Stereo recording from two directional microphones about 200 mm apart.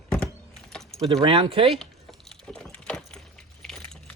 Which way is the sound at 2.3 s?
5° left (ahead or behind).